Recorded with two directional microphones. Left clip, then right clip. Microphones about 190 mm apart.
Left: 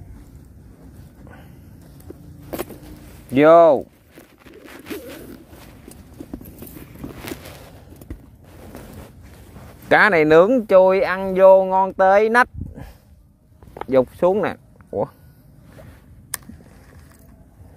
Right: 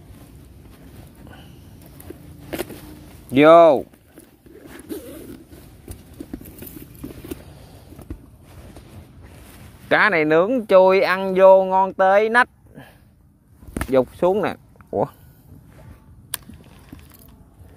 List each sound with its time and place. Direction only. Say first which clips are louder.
3.3 s speech: even; centre (ahead or behind)
9.8 s speech: left 3 dB; 25° left (ahead or behind)
10.6 s speech: even; centre (ahead or behind); by 12.9 s 15° left (ahead or behind)
13.8 s speech: left 1 dB; centre (ahead or behind)
14.9 s speech: right 2 dB; 15° right (ahead or behind)